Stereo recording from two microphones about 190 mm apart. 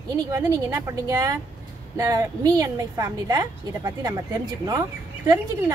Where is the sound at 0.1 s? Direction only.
20° right (ahead or behind).